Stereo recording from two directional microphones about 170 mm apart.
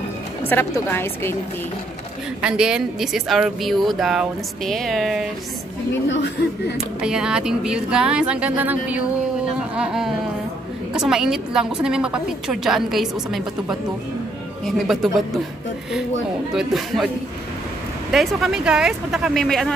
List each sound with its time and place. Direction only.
0.5 s a woman's voice: 10° left (ahead or behind)
2.4 s a woman's voice: 5° right (ahead or behind)
6.0 s speech: 90° left
6.8 s a woman's voice: 5° right (ahead or behind)
16.5 s a woman's voice: centre (ahead or behind)
18.1 s a woman's voice: centre (ahead or behind)